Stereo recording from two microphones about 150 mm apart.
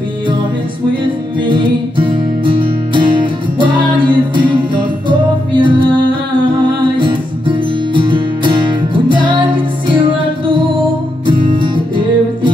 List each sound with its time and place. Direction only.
1.4 s music: 35° right (ahead or behind)
7.0 s music: 35° right (ahead or behind)